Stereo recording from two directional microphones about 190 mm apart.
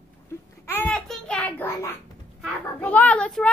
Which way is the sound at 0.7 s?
10° left (ahead or behind).